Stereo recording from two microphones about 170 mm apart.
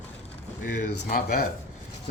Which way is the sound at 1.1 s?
60° left (ahead or behind).